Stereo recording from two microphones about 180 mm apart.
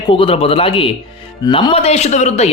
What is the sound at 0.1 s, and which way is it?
A man's voice, 30° left (ahead or behind).